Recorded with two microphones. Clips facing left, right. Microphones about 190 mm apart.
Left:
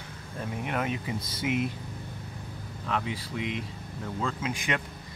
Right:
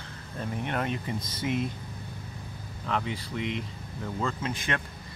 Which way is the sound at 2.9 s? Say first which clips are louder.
Right 1 dB; centre (ahead or behind).